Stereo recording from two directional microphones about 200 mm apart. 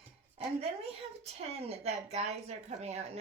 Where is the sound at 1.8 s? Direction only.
30° right (ahead or behind).